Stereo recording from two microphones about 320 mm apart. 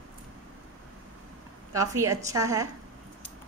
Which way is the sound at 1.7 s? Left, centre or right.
Centre.